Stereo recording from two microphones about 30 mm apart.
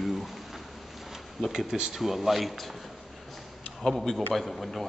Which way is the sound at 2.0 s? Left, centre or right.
Centre.